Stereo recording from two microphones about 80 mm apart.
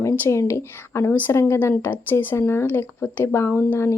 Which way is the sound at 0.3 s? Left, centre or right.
Left.